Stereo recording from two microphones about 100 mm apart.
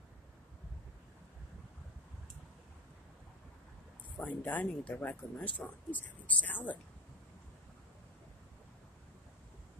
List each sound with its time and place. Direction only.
4.2 s speech: 15° left (ahead or behind)